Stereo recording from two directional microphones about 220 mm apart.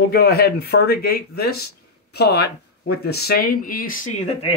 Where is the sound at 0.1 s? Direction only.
45° left (ahead or behind).